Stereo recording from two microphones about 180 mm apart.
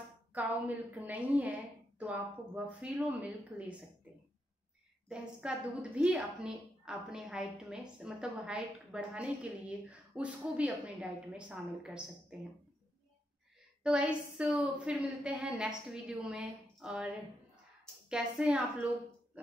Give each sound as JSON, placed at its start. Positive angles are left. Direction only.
{"t": 0.3, "sound": "speech", "side_deg": -10}
{"t": 5.0, "sound": "a woman's voice", "side_deg": -5}
{"t": 13.8, "sound": "a woman's voice", "side_deg": -5}